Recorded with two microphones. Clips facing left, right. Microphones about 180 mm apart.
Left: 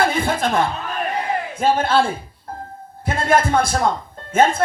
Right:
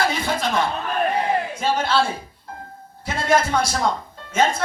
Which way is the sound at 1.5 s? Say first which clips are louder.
Left 8 dB; 55° left (ahead or behind).